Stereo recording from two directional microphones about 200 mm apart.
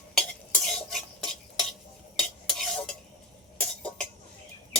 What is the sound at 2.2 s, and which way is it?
Stir, centre (ahead or behind).